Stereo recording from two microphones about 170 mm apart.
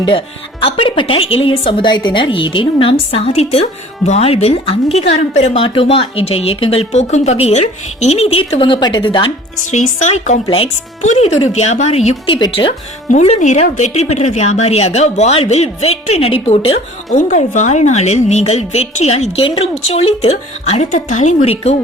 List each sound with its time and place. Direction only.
0.0 s speech: 30° left (ahead or behind)
10.0 s a woman's voice: 45° left (ahead or behind)
13.1 s speech: 40° left (ahead or behind)